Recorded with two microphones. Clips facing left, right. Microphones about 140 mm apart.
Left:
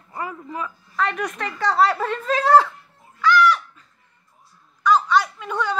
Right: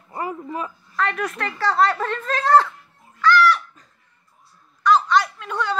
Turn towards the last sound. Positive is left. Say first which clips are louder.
# left 1 dB
turn(degrees=5)  # may be behind; listen again after turning